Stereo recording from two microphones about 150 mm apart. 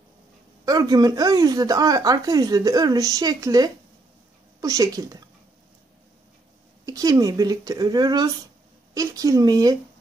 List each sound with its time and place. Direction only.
0.7 s speech: 25° right (ahead or behind)
6.9 s speech: 25° right (ahead or behind)